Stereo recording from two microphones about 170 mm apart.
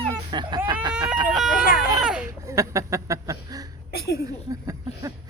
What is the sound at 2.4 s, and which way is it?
Speech, 15° right (ahead or behind).